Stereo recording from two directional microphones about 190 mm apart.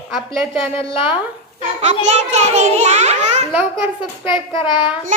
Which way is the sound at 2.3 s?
35° right (ahead or behind).